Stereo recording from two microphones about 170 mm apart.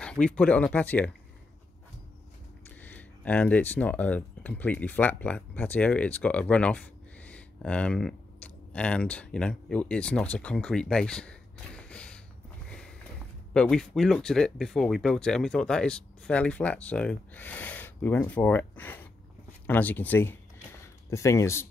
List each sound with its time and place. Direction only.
0.0 s speech: 5° left (ahead or behind)
2.8 s speech: 10° left (ahead or behind)
12.6 s a sound: 5° left (ahead or behind)
13.5 s speech: 5° left (ahead or behind)